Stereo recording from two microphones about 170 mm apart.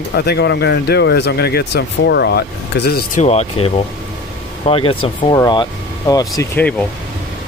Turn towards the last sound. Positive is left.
turn(degrees=20)  # may be behind; listen again after turning